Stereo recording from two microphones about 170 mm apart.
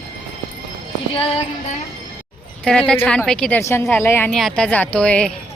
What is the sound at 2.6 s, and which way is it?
A woman's voice, 5° left (ahead or behind).